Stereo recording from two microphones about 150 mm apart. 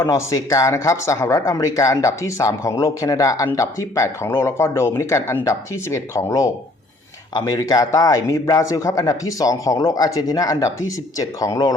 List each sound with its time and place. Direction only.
0.0 s speech: 20° left (ahead or behind)